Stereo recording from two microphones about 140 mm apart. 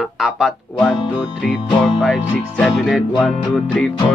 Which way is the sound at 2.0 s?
Centre (ahead or behind).